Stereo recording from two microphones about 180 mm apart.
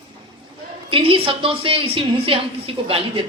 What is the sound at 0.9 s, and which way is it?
A woman's voice, 30° right (ahead or behind).